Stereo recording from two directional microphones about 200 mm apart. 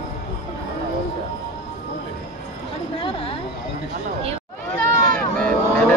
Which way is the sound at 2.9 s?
25° left (ahead or behind).